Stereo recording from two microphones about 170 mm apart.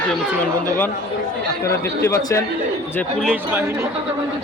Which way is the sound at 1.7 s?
15° left (ahead or behind).